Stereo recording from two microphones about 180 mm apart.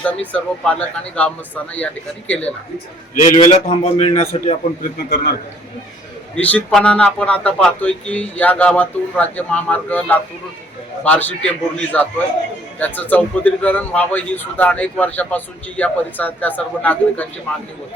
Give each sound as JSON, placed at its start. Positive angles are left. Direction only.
{"t": 0.0, "sound": "speech", "side_deg": 10}
{"t": 3.2, "sound": "a man's voice", "side_deg": 45}
{"t": 3.4, "sound": "a man's voice", "side_deg": 30}
{"t": 6.3, "sound": "speech", "side_deg": 5}